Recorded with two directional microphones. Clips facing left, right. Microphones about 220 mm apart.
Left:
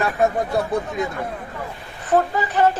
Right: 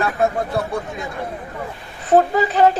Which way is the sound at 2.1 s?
40° right (ahead or behind).